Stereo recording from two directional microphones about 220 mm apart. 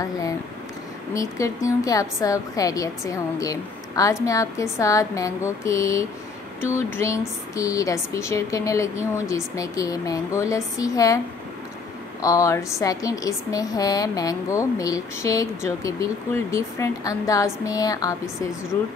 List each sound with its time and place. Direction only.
1.1 s a woman's voice: 15° left (ahead or behind)
12.2 s a woman's voice: 15° left (ahead or behind)